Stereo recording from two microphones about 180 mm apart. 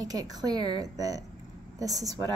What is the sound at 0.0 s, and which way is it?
Speech, 20° right (ahead or behind).